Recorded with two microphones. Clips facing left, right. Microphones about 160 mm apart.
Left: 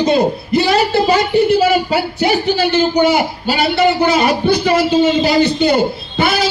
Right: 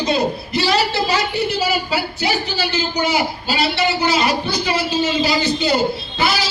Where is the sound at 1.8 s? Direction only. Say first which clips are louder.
Left 6 dB; 55° left (ahead or behind).